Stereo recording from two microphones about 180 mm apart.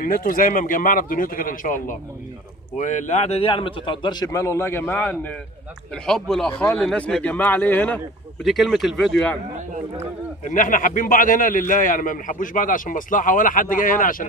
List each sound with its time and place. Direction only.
0.0 s a man's voice: 50° left (ahead or behind); by 9.4 s 5° left (ahead or behind)
10.4 s a man's voice: 45° left (ahead or behind)